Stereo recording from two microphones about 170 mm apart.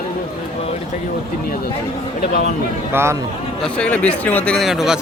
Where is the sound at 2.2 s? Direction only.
70° left (ahead or behind).